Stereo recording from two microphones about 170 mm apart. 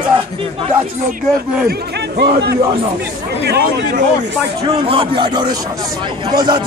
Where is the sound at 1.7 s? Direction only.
75° right (ahead or behind).